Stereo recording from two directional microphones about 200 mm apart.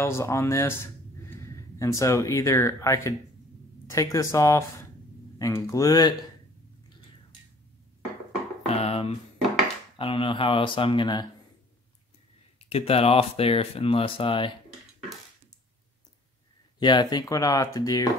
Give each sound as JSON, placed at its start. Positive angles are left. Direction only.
{"t": 0.0, "sound": "speech", "side_deg": 15}
{"t": 8.6, "sound": "a sound", "side_deg": 30}
{"t": 9.9, "sound": "speech", "side_deg": 25}
{"t": 12.6, "sound": "speech", "side_deg": 30}
{"t": 16.8, "sound": "speech", "side_deg": 20}